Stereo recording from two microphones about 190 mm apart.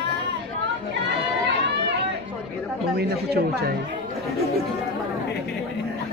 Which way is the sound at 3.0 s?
55° right (ahead or behind).